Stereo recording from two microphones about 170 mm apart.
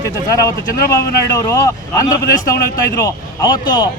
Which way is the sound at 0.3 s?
20° left (ahead or behind).